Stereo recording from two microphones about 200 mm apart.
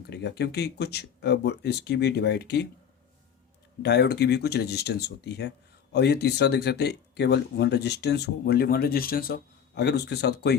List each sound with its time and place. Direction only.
0.0 s speech: 55° left (ahead or behind)
3.8 s speech: 55° left (ahead or behind)